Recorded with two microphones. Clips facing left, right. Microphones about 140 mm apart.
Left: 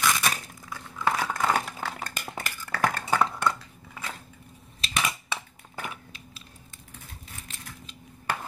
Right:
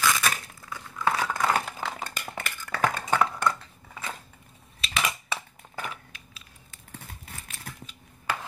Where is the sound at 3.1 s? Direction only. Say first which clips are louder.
Even; centre (ahead or behind).